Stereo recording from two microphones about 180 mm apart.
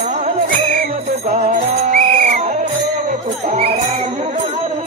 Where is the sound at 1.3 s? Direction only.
40° right (ahead or behind).